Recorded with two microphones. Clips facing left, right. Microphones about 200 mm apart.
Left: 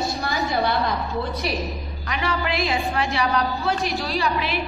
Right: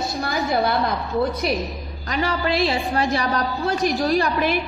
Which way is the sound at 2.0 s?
35° right (ahead or behind).